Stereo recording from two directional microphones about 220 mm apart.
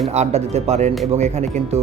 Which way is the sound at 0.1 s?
30° right (ahead or behind).